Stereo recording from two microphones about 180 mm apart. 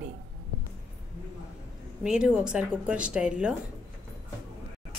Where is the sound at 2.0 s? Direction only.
5° right (ahead or behind).